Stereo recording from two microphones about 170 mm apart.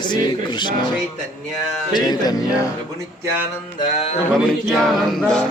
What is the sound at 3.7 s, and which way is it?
Mantra, 35° left (ahead or behind).